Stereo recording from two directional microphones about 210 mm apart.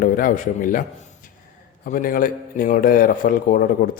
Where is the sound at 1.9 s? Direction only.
40° left (ahead or behind).